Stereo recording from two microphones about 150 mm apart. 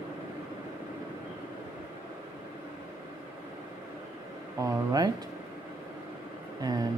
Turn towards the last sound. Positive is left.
turn(degrees=-25)  # may be behind; listen again after turning